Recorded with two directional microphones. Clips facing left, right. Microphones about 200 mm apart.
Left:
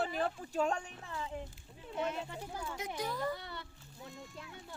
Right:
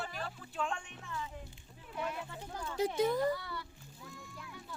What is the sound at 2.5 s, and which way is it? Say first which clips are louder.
Speech: even; 10° left (ahead or behind).